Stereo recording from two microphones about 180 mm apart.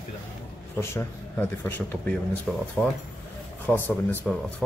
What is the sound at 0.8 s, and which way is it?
Speech, 15° left (ahead or behind).